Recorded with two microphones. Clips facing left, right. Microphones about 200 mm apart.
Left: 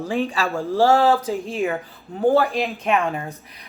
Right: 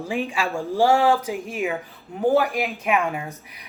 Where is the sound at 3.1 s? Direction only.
10° right (ahead or behind).